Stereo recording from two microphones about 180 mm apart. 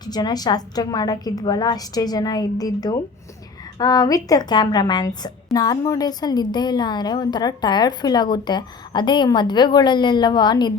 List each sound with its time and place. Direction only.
0.0 s a woman's voice: 20° left (ahead or behind)